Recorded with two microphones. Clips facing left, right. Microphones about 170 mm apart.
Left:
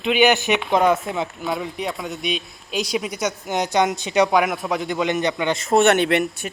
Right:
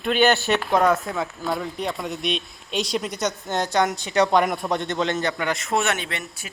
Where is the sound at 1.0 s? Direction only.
20° left (ahead or behind).